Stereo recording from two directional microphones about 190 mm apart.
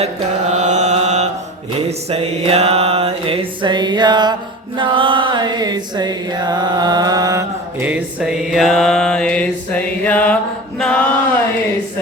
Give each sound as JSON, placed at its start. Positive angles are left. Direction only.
{"t": 0.0, "sound": "mantra", "side_deg": -40}